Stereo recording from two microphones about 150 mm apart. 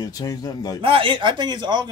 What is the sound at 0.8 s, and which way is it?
Speech, 35° right (ahead or behind).